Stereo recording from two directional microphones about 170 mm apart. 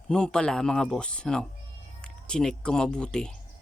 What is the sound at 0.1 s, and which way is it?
Speech, 5° left (ahead or behind).